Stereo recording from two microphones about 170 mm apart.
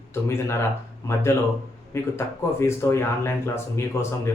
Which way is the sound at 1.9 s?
15° left (ahead or behind).